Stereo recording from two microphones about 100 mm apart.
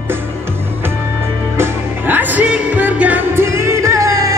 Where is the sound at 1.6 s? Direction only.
20° right (ahead or behind).